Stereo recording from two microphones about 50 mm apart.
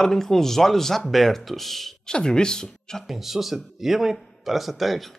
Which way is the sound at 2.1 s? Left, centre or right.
Centre.